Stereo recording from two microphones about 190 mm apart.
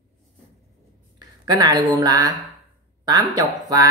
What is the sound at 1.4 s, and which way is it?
Speech, 20° right (ahead or behind).